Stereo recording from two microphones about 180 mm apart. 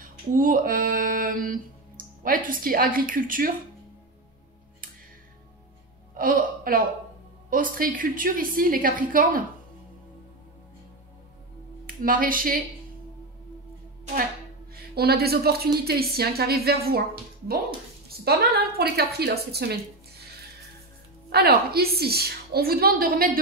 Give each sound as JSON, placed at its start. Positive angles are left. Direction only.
{"t": 0.4, "sound": "music", "side_deg": -50}
{"t": 6.1, "sound": "speech", "side_deg": -50}
{"t": 7.4, "sound": "music", "side_deg": -50}
{"t": 11.8, "sound": "speech", "side_deg": -50}
{"t": 14.7, "sound": "a woman's voice", "side_deg": -60}
{"t": 18.0, "sound": "a woman's voice", "side_deg": -60}
{"t": 21.3, "sound": "a woman's voice", "side_deg": -60}